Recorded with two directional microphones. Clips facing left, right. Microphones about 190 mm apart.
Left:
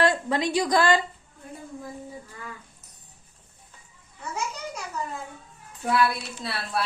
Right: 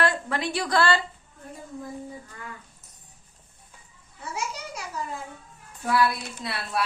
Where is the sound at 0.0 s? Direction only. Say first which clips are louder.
Left 3 dB; 20° left (ahead or behind).